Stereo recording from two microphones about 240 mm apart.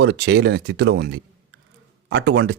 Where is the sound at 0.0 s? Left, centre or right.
Right.